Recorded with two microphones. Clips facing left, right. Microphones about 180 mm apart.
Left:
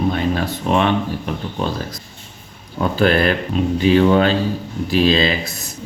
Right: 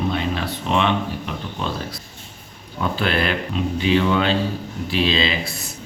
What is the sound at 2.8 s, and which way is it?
Speech, 45° left (ahead or behind).